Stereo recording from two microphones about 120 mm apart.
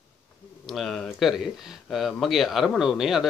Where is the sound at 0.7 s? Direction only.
Centre (ahead or behind).